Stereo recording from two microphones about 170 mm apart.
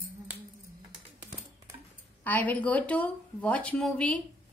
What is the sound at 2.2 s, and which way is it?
Speech, 10° left (ahead or behind).